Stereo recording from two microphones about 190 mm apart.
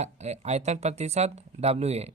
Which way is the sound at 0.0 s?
35° right (ahead or behind).